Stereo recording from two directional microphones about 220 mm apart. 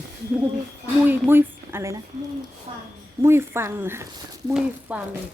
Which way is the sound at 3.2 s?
10° right (ahead or behind).